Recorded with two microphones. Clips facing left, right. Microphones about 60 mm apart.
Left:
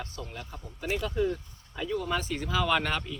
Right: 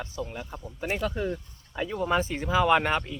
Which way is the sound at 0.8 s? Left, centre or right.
Right.